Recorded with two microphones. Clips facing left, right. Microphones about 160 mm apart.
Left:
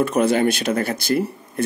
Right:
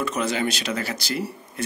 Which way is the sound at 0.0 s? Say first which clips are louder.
Left 7 dB; 55° left (ahead or behind).